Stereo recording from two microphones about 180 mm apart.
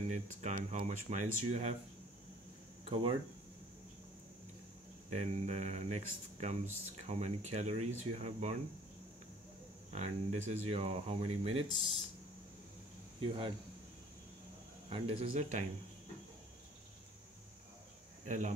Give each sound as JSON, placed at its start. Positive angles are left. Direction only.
{"t": 0.1, "sound": "speech", "side_deg": -40}
{"t": 2.8, "sound": "speech", "side_deg": -30}
{"t": 5.1, "sound": "speech", "side_deg": -35}
{"t": 9.9, "sound": "speech", "side_deg": -40}
{"t": 13.2, "sound": "speech", "side_deg": -30}
{"t": 14.9, "sound": "speech", "side_deg": -30}
{"t": 18.2, "sound": "speech", "side_deg": -40}